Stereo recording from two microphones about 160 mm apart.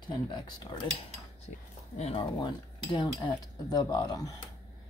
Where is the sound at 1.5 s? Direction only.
45° left (ahead or behind).